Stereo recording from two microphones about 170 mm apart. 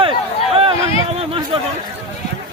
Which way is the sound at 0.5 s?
35° right (ahead or behind).